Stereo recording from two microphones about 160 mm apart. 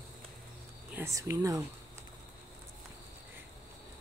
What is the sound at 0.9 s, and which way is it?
Speech, 15° right (ahead or behind).